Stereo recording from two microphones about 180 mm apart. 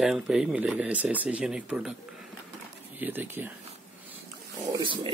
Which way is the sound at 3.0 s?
10° right (ahead or behind).